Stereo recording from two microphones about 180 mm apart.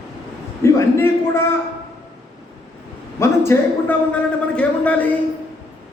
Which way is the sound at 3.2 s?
15° left (ahead or behind).